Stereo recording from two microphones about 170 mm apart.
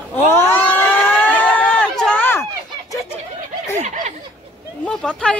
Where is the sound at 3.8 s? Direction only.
45° right (ahead or behind).